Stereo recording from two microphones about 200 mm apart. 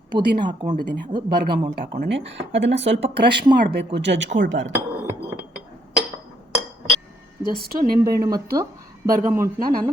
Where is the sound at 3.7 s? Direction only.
60° right (ahead or behind).